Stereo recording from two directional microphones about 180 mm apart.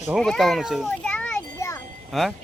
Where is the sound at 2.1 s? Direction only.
Centre (ahead or behind).